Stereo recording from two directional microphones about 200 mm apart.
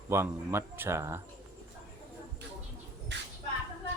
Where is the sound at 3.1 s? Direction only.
60° right (ahead or behind).